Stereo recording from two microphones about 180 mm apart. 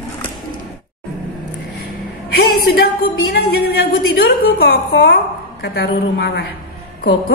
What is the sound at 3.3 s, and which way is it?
A woman's voice, 60° left (ahead or behind).